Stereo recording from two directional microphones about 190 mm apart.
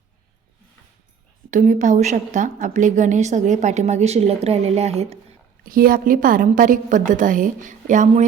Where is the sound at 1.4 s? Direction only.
40° right (ahead or behind).